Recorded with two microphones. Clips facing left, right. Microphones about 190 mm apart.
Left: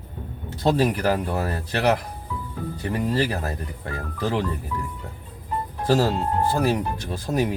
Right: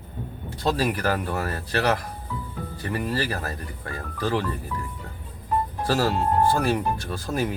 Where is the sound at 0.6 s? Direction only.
20° left (ahead or behind).